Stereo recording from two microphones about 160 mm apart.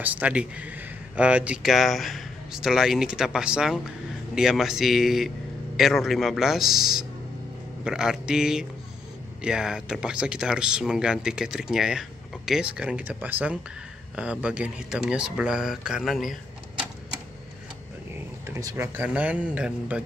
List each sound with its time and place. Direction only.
0.0 s speech: 10° right (ahead or behind)
18.5 s speech: 20° right (ahead or behind)
18.9 s speech: 10° right (ahead or behind)